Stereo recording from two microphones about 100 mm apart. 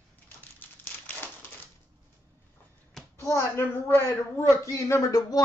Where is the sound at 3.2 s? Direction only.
25° left (ahead or behind).